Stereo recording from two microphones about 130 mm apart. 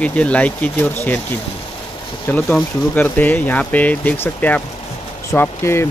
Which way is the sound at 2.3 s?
5° left (ahead or behind).